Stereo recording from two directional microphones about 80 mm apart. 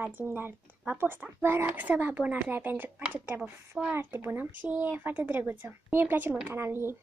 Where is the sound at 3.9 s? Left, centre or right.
Right.